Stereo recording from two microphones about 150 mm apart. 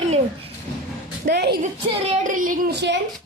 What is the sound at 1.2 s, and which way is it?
Speech, 90° right.